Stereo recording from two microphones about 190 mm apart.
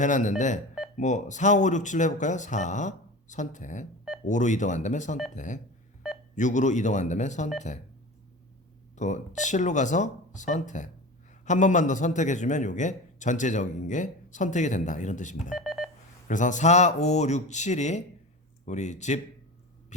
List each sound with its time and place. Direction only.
0.0 s a man's voice: 40° left (ahead or behind)
9.0 s a man's voice: 40° left (ahead or behind)
15.5 s telephone dialing: 5° right (ahead or behind)
16.3 s a man's voice: 40° left (ahead or behind)
19.9 s a sound: 40° left (ahead or behind)